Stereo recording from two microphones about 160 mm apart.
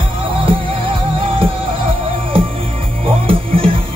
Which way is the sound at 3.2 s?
35° right (ahead or behind).